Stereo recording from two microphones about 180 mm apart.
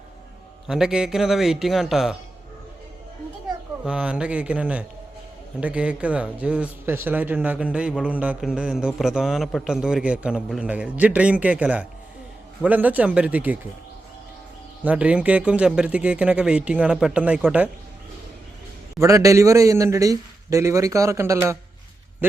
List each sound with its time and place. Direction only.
0.7 s a man's voice: 5° right (ahead or behind)
3.8 s a man's voice: 5° right (ahead or behind)
14.8 s speech: 5° right (ahead or behind)
18.9 s a man's voice: 15° right (ahead or behind)